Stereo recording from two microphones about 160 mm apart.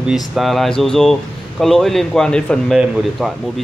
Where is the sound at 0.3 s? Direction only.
Centre (ahead or behind).